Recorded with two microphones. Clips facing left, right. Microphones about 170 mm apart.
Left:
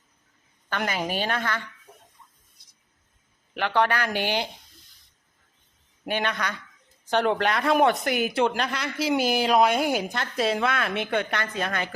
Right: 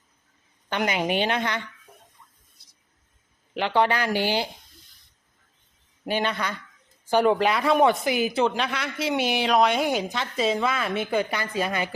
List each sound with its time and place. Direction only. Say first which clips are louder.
0.7 s a woman's voice: right 3 dB; 15° right (ahead or behind)
3.6 s a woman's voice: right 1 dB; 15° right (ahead or behind)
6.1 s a woman's voice: right 2 dB; 10° right (ahead or behind)